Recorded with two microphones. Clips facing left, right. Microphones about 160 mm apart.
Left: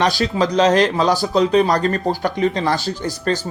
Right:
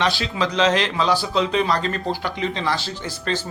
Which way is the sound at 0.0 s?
40° left (ahead or behind).